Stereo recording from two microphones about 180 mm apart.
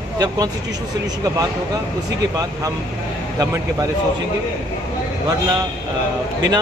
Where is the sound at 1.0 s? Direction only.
20° right (ahead or behind).